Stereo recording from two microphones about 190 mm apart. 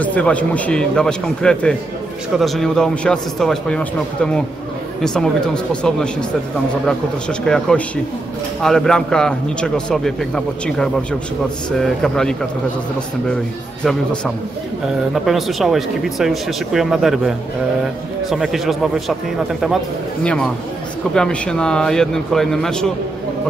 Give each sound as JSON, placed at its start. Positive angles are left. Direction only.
{"t": 0.0, "sound": "a man's voice", "side_deg": 5}
{"t": 15.1, "sound": "a man's voice", "side_deg": 0}
{"t": 20.2, "sound": "a man's voice", "side_deg": 5}